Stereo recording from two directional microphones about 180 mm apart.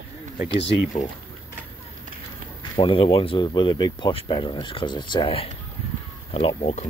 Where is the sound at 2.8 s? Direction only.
30° left (ahead or behind).